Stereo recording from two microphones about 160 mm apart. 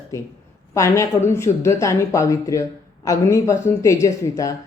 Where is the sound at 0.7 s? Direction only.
20° left (ahead or behind).